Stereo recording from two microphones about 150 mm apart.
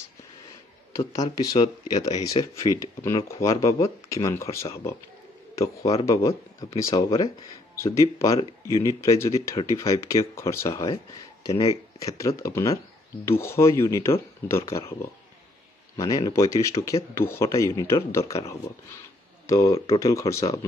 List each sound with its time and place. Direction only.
0.9 s speech: 25° left (ahead or behind)
2.0 s speech: 50° left (ahead or behind)
2.5 s speech: 25° left (ahead or behind)
6.6 s speech: 30° left (ahead or behind)
7.7 s speech: 20° left (ahead or behind)
11.4 s speech: 40° left (ahead or behind)
12.0 s speech: 20° left (ahead or behind)